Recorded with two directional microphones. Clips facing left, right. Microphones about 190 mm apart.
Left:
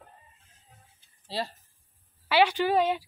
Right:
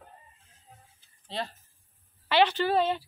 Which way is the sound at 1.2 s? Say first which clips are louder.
Left 2 dB; 5° left (ahead or behind).